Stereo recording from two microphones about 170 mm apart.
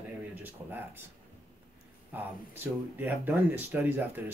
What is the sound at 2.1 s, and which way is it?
Speech, 10° right (ahead or behind).